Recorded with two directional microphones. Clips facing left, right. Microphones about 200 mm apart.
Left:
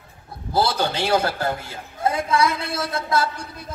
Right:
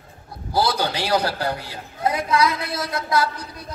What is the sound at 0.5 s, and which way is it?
Speech, 25° left (ahead or behind).